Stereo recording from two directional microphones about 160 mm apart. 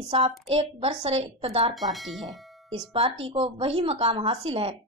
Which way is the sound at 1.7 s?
Centre (ahead or behind).